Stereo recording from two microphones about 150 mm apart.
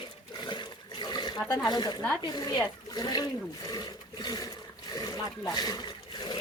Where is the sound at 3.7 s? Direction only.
30° left (ahead or behind).